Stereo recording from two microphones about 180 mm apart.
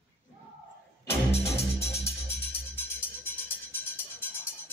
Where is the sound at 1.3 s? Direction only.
35° left (ahead or behind).